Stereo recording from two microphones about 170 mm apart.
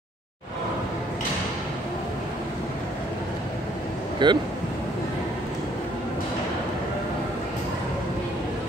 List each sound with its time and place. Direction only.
4.2 s speech: 25° right (ahead or behind)